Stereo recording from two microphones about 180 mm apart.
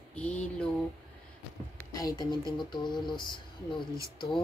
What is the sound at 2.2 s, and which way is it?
Speech, 25° left (ahead or behind).